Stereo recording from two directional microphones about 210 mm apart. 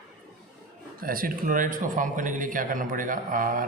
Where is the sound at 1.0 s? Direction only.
45° right (ahead or behind).